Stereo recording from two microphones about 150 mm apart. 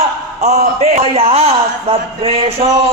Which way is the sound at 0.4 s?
45° right (ahead or behind).